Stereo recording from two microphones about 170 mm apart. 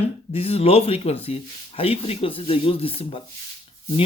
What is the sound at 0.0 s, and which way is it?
Speech, 35° left (ahead or behind).